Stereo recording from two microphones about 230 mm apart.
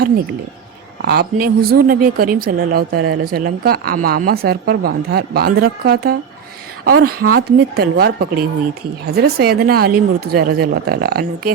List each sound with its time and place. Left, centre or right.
1.0 s a woman's voice: right